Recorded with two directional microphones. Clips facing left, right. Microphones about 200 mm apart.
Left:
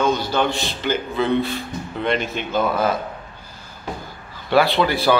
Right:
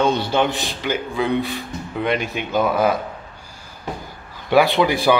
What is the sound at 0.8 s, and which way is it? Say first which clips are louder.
Speech: left 1 dB; 10° right (ahead or behind).